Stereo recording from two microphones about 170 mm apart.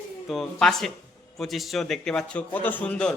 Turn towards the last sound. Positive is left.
turn(degrees=5)  # may be behind; listen again after turning